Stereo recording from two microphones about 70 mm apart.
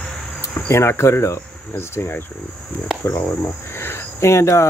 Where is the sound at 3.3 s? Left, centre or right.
Left.